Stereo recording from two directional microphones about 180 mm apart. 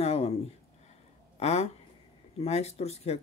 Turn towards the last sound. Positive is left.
turn(degrees=35)  # may be behind; listen again after turning